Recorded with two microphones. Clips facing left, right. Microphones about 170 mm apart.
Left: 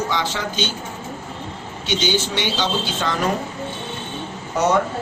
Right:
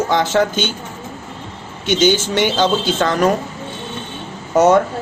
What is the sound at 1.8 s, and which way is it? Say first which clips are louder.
Speech: right 7 dB; 50° right (ahead or behind).